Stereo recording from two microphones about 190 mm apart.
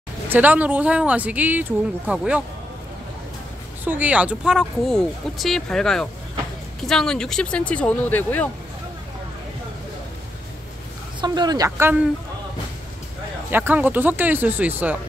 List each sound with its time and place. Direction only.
0.3 s speech: 10° right (ahead or behind)
3.8 s speech: 10° right (ahead or behind); by 8.5 s 10° left (ahead or behind)
11.1 s speech: 20° right (ahead or behind)
13.5 s speech: 10° right (ahead or behind)